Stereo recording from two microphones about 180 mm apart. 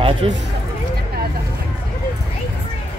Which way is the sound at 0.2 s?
30° right (ahead or behind).